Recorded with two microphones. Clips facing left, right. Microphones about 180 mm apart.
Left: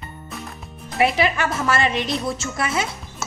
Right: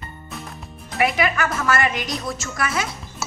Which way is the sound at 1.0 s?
30° left (ahead or behind).